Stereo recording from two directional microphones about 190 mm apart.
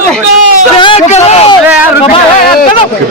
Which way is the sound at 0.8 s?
30° left (ahead or behind).